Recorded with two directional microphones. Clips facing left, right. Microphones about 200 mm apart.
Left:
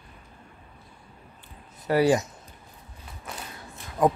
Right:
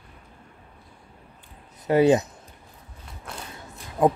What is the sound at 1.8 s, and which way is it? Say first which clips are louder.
Speech: right 3 dB; 20° right (ahead or behind).